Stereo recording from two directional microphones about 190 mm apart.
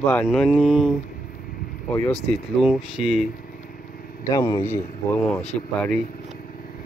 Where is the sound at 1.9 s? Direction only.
15° left (ahead or behind).